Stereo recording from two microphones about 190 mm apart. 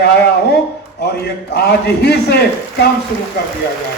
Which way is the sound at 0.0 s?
60° left (ahead or behind).